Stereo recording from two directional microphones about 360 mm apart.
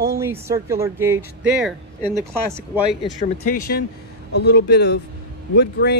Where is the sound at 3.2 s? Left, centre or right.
Left.